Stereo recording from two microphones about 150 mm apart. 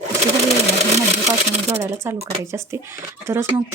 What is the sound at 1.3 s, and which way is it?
Speech, 20° right (ahead or behind).